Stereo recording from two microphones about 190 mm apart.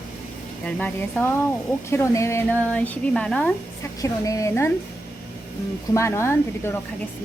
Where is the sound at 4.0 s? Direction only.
15° left (ahead or behind).